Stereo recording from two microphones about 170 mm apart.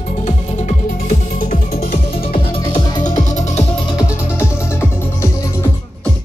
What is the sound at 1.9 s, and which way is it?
Music, 30° left (ahead or behind).